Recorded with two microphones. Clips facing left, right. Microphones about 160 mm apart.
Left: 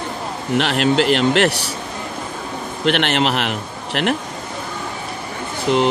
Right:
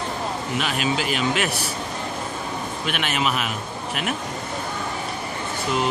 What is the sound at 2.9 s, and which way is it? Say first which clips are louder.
A man's voice: left 8 dB; 70° left (ahead or behind).